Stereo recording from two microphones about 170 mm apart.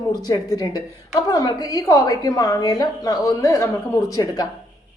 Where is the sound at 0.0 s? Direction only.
20° left (ahead or behind).